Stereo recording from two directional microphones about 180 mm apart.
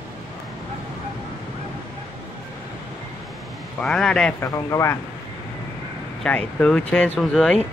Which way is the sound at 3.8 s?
5° left (ahead or behind).